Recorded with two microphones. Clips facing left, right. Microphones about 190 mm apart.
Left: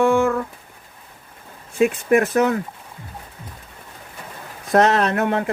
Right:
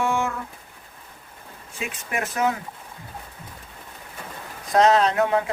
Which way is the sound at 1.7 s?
55° left (ahead or behind).